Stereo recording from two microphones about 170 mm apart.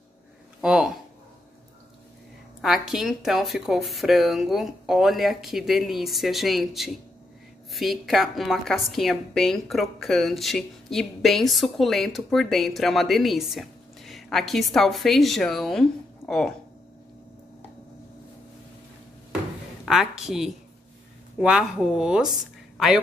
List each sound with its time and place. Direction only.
0.6 s a sound: 5° right (ahead or behind)
2.6 s a woman's voice: 5° right (ahead or behind)
19.8 s a woman's voice: centre (ahead or behind)